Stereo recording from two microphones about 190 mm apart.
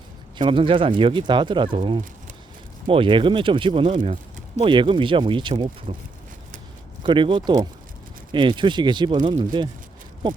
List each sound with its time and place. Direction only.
0.3 s speech: 25° right (ahead or behind)
3.9 s speech: 40° right (ahead or behind)
4.6 s speech: 25° right (ahead or behind)
7.0 s speech: 25° right (ahead or behind)